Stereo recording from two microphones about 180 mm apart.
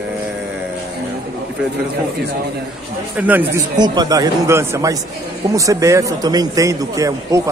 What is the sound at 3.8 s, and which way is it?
A man's voice, 20° right (ahead or behind).